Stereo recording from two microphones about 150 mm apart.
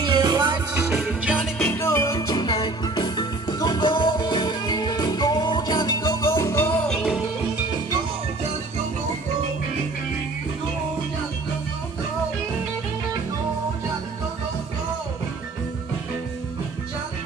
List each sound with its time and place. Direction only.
0.0 s music: 30° right (ahead or behind)
0.7 s music: 15° right (ahead or behind)
1.7 s music: 15° left (ahead or behind)
6.9 s music: 5° left (ahead or behind)